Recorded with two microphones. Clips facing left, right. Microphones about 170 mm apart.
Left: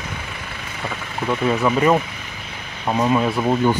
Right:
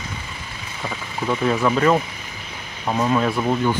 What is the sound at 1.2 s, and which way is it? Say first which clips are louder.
Speech: left 1 dB; centre (ahead or behind).